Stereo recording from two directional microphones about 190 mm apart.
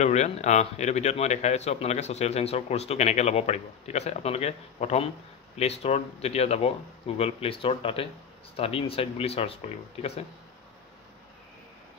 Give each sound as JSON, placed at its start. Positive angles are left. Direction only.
{"t": 0.0, "sound": "speech", "side_deg": 40}